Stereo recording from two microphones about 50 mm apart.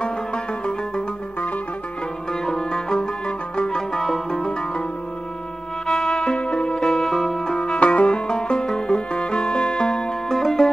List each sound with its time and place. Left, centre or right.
0.0 s music: centre
2.4 s music: centre
5.9 s music: centre